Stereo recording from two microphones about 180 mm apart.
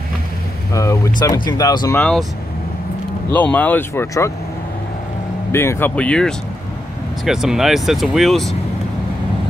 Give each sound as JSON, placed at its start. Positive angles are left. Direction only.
{"t": 0.7, "sound": "speech", "side_deg": 15}
{"t": 2.0, "sound": "speech", "side_deg": 5}
{"t": 3.3, "sound": "speech", "side_deg": 10}
{"t": 5.5, "sound": "speech", "side_deg": 15}